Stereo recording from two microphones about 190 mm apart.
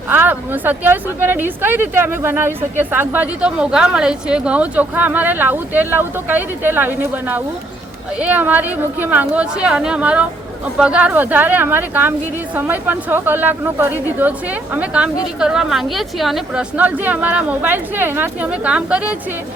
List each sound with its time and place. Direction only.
0.1 s speech: 10° right (ahead or behind)